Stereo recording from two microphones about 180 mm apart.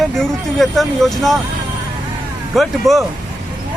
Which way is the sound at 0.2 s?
Centre (ahead or behind).